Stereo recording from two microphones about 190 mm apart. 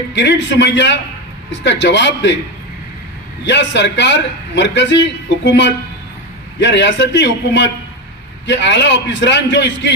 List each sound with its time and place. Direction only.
0.1 s a man's voice: 65° left (ahead or behind)
3.4 s a man's voice: 65° left (ahead or behind)